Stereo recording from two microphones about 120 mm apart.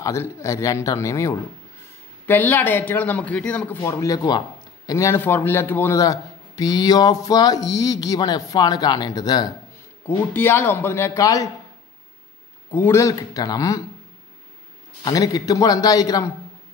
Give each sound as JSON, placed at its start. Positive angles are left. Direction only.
{"t": 0.0, "sound": "speech", "side_deg": 25}
{"t": 2.2, "sound": "a man's voice", "side_deg": 15}
{"t": 3.8, "sound": "a man's voice", "side_deg": 25}
{"t": 10.0, "sound": "speech", "side_deg": 15}
{"t": 12.7, "sound": "speech", "side_deg": 20}
{"t": 15.0, "sound": "a man's voice", "side_deg": 30}